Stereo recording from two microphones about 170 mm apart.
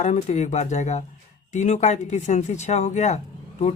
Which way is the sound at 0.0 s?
40° left (ahead or behind).